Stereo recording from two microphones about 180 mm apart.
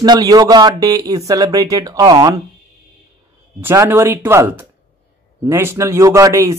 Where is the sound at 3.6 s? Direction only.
15° right (ahead or behind).